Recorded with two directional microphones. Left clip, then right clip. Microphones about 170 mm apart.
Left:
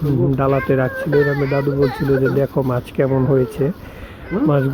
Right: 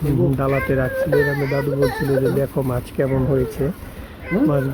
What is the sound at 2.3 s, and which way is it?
Speech, 30° left (ahead or behind).